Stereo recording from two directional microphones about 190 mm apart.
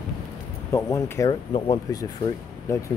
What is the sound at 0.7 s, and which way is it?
Speech, 15° left (ahead or behind).